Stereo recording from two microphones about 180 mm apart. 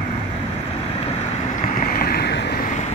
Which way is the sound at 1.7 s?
50° left (ahead or behind).